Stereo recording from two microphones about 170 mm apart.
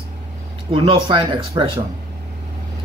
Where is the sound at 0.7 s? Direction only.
30° right (ahead or behind).